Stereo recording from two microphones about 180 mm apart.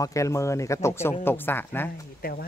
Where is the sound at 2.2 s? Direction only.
60° left (ahead or behind).